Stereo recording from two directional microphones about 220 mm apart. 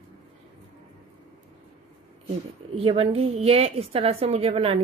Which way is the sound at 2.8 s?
25° right (ahead or behind).